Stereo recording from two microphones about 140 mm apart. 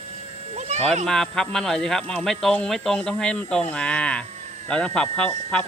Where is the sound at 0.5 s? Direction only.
50° right (ahead or behind).